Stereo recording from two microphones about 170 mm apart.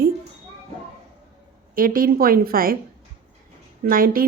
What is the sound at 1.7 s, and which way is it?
A woman's voice, 55° right (ahead or behind).